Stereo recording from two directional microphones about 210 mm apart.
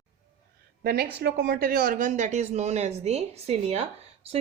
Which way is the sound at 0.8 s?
50° right (ahead or behind).